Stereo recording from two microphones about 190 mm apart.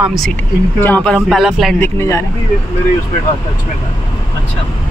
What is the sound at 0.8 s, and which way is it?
Speech, 10° left (ahead or behind).